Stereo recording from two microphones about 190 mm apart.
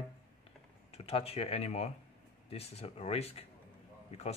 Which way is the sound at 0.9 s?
30° left (ahead or behind).